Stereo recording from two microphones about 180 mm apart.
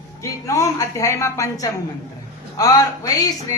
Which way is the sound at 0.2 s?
15° left (ahead or behind).